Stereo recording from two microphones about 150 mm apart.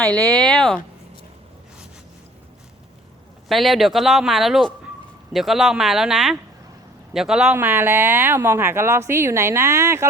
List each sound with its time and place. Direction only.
0.3 s speech: 10° left (ahead or behind)
3.5 s speech: centre (ahead or behind)
7.5 s speech: 15° right (ahead or behind)